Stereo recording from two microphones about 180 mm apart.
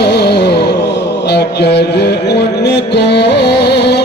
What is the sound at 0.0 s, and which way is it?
Music, 65° left (ahead or behind).